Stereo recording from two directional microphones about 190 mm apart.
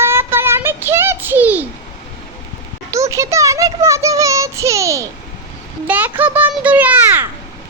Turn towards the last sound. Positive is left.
turn(degrees=-10)  # may be behind; listen again after turning